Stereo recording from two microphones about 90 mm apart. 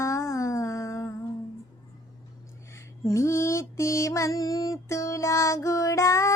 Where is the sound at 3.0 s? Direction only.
30° left (ahead or behind).